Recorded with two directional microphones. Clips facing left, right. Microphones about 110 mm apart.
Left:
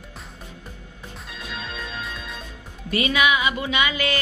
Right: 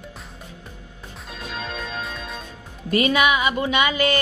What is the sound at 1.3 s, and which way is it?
Music, 40° right (ahead or behind).